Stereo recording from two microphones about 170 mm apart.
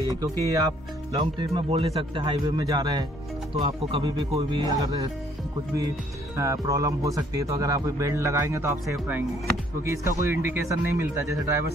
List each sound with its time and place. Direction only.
0.2 s speech: 20° right (ahead or behind)
6.3 s speech: 20° right (ahead or behind)
9.8 s speech: 15° right (ahead or behind)